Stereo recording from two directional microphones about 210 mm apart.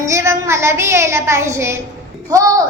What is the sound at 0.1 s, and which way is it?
A child's voice, 15° right (ahead or behind).